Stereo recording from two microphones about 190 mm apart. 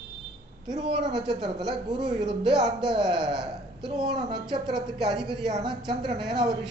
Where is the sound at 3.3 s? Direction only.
5° right (ahead or behind).